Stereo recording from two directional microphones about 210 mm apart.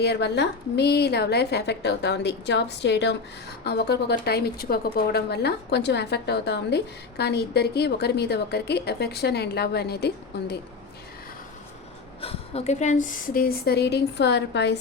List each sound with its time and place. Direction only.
0.0 s speech: 50° left (ahead or behind)
12.2 s speech: 30° left (ahead or behind); by 14.8 s 55° left (ahead or behind)